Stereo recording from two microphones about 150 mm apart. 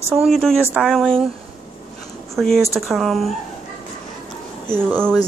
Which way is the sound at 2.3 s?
Centre (ahead or behind).